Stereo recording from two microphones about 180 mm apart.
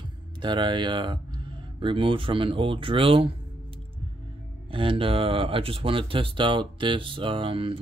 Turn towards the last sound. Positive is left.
turn(degrees=-30)  # may be behind; listen again after turning